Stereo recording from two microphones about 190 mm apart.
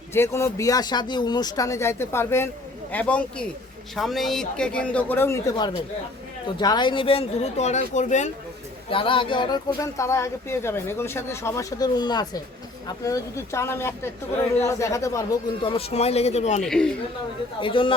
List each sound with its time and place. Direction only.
0.1 s speech: 15° left (ahead or behind); by 8.3 s 40° left (ahead or behind)
8.9 s speech: 25° left (ahead or behind)
16.6 s speech: 5° left (ahead or behind)
17.6 s speech: 25° left (ahead or behind)